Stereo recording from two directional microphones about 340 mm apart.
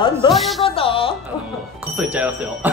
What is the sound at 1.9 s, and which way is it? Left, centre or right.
Speech, centre.